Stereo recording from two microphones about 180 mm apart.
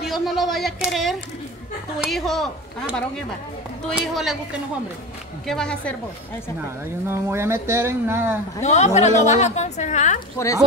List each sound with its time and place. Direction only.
0.0 s speech: centre (ahead or behind)
7.1 s speech: 15° right (ahead or behind)
8.5 s a woman's voice: 40° left (ahead or behind)